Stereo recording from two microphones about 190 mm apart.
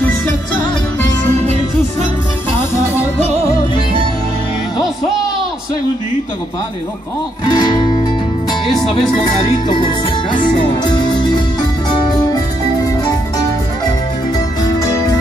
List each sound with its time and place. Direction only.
7.4 s music: 25° left (ahead or behind)
9.4 s music: 25° left (ahead or behind)